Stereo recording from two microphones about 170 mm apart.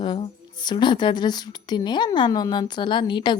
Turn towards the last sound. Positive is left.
turn(degrees=25)  # may be behind; listen again after turning